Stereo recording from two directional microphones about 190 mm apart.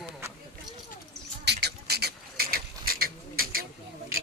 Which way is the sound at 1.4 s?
60° right (ahead or behind).